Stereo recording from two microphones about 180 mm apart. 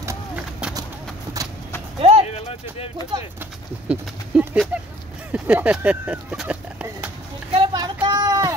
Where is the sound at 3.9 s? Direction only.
5° right (ahead or behind).